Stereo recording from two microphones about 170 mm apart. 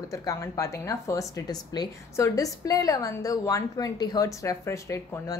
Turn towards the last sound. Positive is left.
turn(degrees=20)  # may be behind; listen again after turning